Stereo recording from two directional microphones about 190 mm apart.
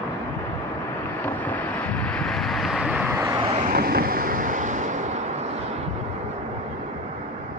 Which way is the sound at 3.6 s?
50° right (ahead or behind).